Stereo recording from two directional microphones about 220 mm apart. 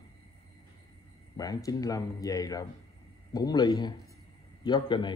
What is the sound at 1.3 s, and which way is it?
A man's voice, 15° left (ahead or behind).